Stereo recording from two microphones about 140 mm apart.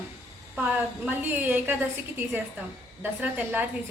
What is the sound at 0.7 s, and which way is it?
A woman's voice, 10° right (ahead or behind).